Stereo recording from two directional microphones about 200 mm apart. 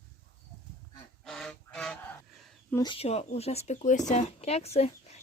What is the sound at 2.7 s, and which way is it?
Speech, 20° left (ahead or behind).